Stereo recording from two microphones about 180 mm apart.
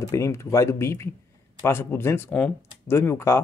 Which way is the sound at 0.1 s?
15° left (ahead or behind).